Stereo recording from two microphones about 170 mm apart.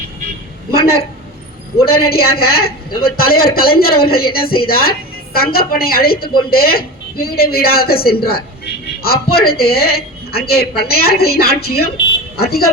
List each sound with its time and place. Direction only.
0.7 s a woman's voice: 65° left (ahead or behind)